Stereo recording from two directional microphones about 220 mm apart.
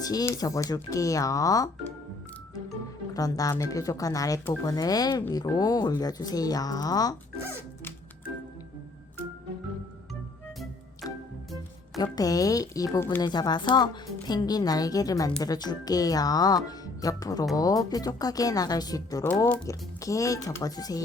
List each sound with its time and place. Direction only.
0.0 s speech: 15° left (ahead or behind)
3.2 s speech: 15° left (ahead or behind)
12.1 s speech: 15° left (ahead or behind)